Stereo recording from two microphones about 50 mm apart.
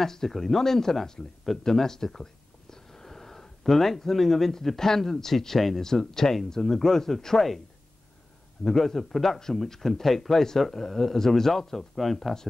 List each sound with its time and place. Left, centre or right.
0.0 s speech: centre
8.6 s speech: centre